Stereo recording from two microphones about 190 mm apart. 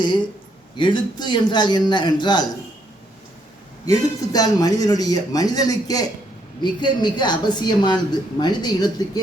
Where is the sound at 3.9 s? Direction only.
20° left (ahead or behind).